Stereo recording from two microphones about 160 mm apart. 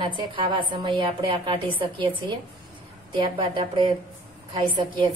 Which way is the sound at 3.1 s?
30° right (ahead or behind).